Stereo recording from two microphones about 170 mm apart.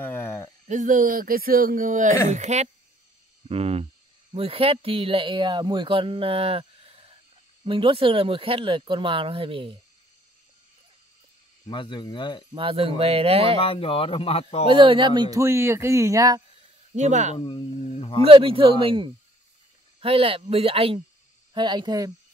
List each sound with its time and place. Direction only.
0.0 s a sound: 10° left (ahead or behind)
0.7 s speech: 50° right (ahead or behind); by 9.8 s 30° right (ahead or behind)
11.6 s speech: 25° left (ahead or behind)
12.5 s speech: 35° right (ahead or behind)
13.6 s speech: 30° left (ahead or behind)
14.7 s speech: 30° right (ahead or behind)
16.9 s speech: 45° right (ahead or behind)
17.8 s a sound: 40° left (ahead or behind)
18.2 s speech: 30° right (ahead or behind)